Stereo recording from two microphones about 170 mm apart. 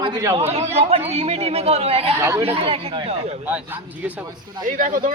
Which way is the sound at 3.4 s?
10° right (ahead or behind).